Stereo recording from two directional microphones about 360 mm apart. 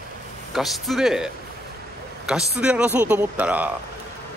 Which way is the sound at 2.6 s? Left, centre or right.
Centre.